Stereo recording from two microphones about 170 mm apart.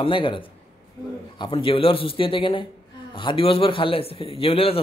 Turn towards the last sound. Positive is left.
turn(degrees=35)  # may be behind; listen again after turning